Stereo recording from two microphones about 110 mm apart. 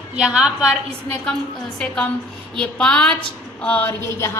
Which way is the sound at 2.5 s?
10° left (ahead or behind).